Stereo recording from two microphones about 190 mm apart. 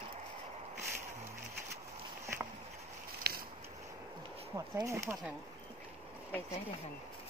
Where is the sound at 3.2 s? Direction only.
55° right (ahead or behind).